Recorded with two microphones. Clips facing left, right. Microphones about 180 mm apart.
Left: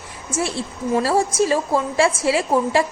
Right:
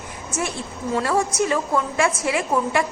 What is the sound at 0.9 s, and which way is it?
A woman's voice, 30° left (ahead or behind).